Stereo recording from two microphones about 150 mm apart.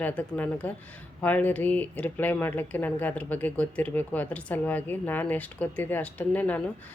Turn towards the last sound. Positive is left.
turn(degrees=10)  # may be behind; listen again after turning